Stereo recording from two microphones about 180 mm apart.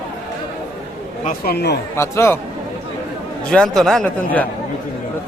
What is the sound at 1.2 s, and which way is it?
Speech, 60° left (ahead or behind).